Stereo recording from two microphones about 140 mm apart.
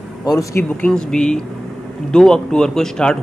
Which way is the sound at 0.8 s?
5° left (ahead or behind).